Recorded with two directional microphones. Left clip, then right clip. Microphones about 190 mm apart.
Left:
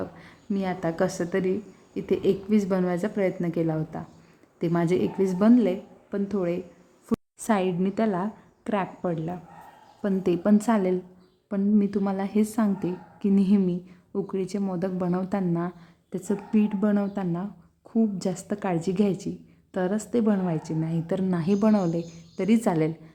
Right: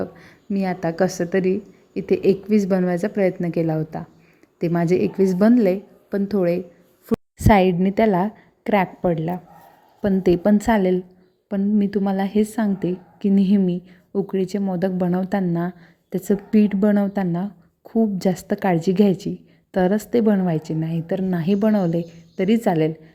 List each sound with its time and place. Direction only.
0.0 s a woman's voice: 20° right (ahead or behind)